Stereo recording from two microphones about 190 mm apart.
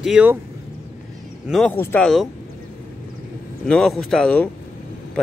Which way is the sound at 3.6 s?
5° left (ahead or behind).